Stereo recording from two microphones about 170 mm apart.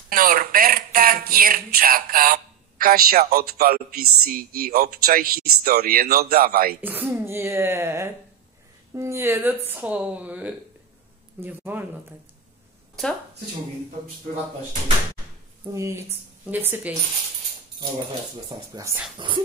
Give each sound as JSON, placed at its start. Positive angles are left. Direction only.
{"t": 0.1, "sound": "speech", "side_deg": -55}
{"t": 6.8, "sound": "a woman's voice", "side_deg": -10}
{"t": 13.0, "sound": "speech", "side_deg": 0}
{"t": 15.6, "sound": "a woman's voice", "side_deg": -15}
{"t": 18.8, "sound": "a woman's voice", "side_deg": -15}
{"t": 19.1, "sound": "speech", "side_deg": -30}